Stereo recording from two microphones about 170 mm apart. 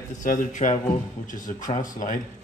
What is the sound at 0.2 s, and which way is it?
Speech, 50° left (ahead or behind).